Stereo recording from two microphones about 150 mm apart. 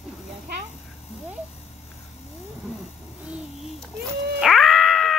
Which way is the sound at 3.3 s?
Centre (ahead or behind).